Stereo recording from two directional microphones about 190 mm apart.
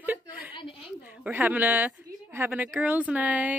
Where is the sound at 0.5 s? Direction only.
25° left (ahead or behind).